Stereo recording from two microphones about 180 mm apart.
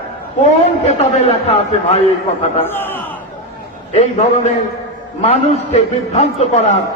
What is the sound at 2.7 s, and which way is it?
Speech, 10° left (ahead or behind).